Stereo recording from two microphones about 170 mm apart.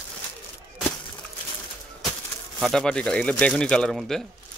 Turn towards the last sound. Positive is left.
turn(degrees=5)  # may be behind; listen again after turning